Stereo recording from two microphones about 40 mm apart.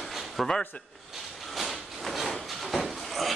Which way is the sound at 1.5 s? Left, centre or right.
Centre.